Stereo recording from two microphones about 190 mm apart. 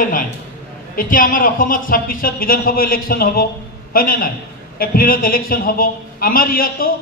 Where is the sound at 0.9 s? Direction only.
45° left (ahead or behind).